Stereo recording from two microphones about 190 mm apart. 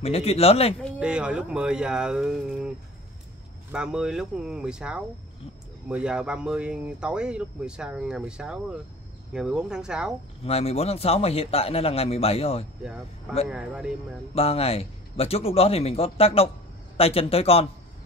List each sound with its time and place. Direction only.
0.0 s a man's voice: 30° left (ahead or behind)
0.9 s speech: 5° right (ahead or behind)
3.7 s speech: 5° right (ahead or behind)
10.4 s a man's voice: 30° left (ahead or behind)
13.5 s speech: 5° right (ahead or behind)
14.3 s a man's voice: 30° left (ahead or behind)